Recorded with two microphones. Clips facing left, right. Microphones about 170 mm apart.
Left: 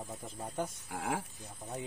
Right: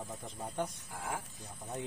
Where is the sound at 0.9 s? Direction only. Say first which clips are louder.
Left 4 dB; 70° left (ahead or behind).